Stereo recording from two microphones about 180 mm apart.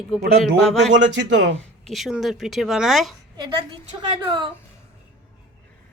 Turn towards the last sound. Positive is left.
turn(degrees=-25)  # may be behind; listen again after turning